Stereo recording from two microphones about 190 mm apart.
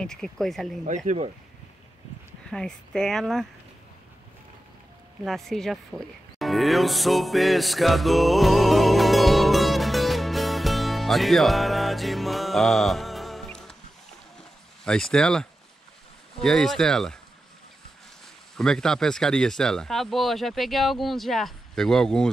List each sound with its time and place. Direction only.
0.0 s speech: 5° left (ahead or behind)
0.8 s speech: 40° right (ahead or behind)
2.5 s speech: 5° left (ahead or behind)
5.2 s music: centre (ahead or behind)
14.9 s speech: 5° left (ahead or behind)
16.4 s speech: centre (ahead or behind)
18.6 s speech: 5° left (ahead or behind)